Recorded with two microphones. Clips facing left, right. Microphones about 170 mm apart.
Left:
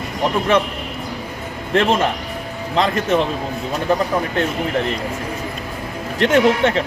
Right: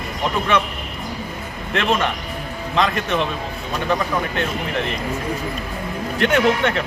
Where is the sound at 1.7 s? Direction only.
35° left (ahead or behind).